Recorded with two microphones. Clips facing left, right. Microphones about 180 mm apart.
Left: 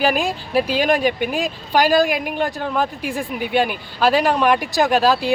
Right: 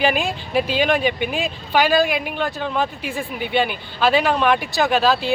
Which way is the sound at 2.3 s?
10° left (ahead or behind).